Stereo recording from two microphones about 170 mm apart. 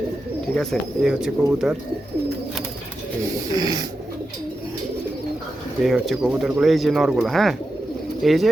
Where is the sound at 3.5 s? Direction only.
20° right (ahead or behind).